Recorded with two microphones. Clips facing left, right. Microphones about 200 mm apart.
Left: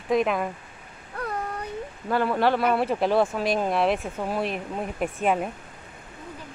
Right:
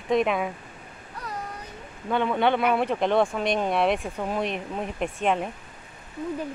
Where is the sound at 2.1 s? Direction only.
5° left (ahead or behind).